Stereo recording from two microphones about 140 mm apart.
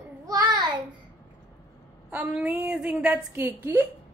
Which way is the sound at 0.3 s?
30° right (ahead or behind).